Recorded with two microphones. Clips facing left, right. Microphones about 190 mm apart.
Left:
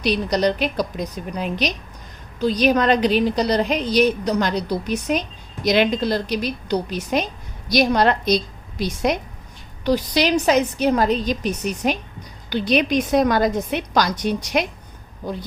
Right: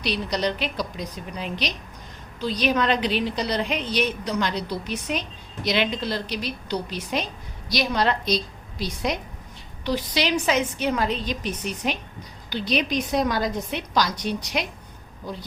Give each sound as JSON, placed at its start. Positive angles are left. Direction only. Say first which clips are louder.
{"t": 0.0, "sound": "a woman's voice", "louder": "left 6 dB", "side_deg": 45}